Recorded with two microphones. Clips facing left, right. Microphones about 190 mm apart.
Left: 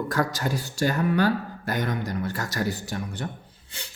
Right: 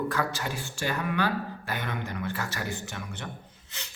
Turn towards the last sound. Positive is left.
turn(degrees=35)  # may be behind; listen again after turning